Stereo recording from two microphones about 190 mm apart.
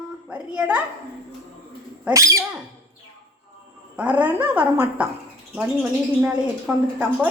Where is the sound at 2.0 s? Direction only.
15° right (ahead or behind).